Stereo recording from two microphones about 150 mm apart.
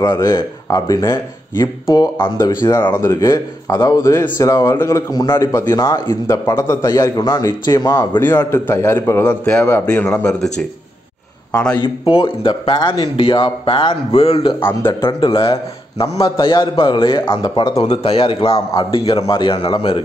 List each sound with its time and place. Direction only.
0.0 s a man's voice: 25° left (ahead or behind)
2.9 s a man's voice: 20° left (ahead or behind)
8.2 s a man's voice: 15° left (ahead or behind)
11.5 s a man's voice: 5° left (ahead or behind)
11.8 s a man's voice: 35° left (ahead or behind)
14.6 s a man's voice: 15° left (ahead or behind)
15.0 s a man's voice: 30° left (ahead or behind)